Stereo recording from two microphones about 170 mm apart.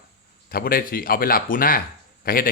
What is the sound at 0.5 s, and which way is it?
Speech, 60° left (ahead or behind).